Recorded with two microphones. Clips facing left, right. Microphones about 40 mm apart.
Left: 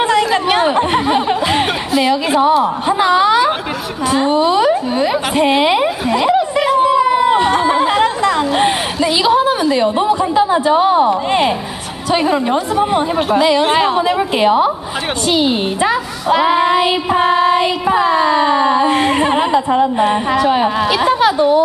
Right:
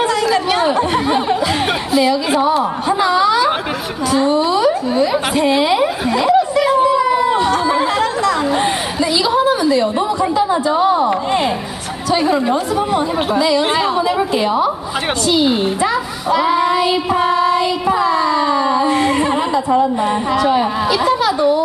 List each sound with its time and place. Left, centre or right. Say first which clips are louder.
0.0 s chatter: left 2 dB; left
1.9 s a woman's voice: right 1 dB; centre
3.0 s speech: left 2 dB; left
6.1 s a sound: right 1 dB; left
6.6 s chatter: left 1 dB; centre
8.5 s a woman's voice: left 2 dB; left
12.1 s speech: left 1 dB; left
20.9 s a sound: left 1 dB; left